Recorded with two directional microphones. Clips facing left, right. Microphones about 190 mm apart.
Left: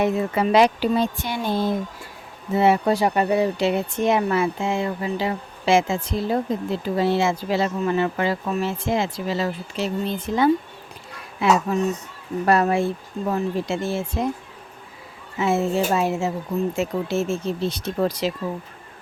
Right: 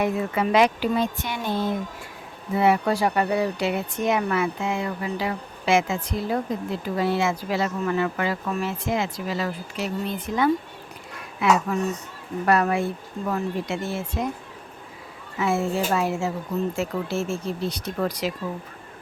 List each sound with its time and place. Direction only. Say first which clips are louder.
0.0 s speech: left 3 dB; 30° left (ahead or behind)
15.4 s speech: left 3 dB; 20° left (ahead or behind)